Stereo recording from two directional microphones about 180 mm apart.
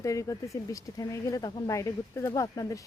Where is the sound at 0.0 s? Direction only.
15° left (ahead or behind).